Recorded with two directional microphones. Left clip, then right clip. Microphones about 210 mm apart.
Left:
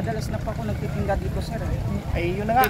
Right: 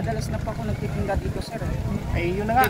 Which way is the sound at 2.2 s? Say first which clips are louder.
Even; 15° left (ahead or behind).